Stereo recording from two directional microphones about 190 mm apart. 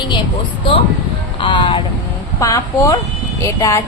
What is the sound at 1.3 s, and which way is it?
A woman's voice, 25° left (ahead or behind).